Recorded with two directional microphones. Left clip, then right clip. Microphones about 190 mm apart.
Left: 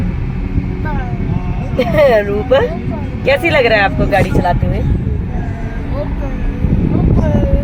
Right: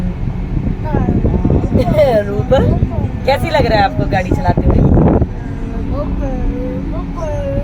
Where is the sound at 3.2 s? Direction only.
25° left (ahead or behind).